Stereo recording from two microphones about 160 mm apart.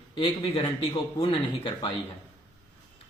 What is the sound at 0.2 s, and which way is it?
Speech, 35° left (ahead or behind).